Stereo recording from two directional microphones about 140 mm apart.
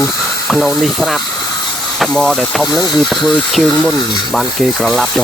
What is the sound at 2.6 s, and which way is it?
Speech, 30° left (ahead or behind).